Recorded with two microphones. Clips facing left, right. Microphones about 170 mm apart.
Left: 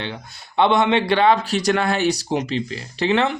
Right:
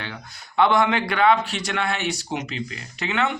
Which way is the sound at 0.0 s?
25° left (ahead or behind).